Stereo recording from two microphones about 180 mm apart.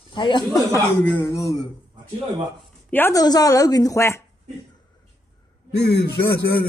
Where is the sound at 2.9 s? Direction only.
15° left (ahead or behind).